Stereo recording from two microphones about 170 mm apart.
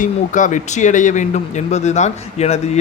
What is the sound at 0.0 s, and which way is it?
A man's voice, 50° left (ahead or behind).